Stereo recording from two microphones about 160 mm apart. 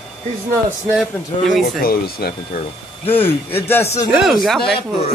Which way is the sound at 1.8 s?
70° left (ahead or behind).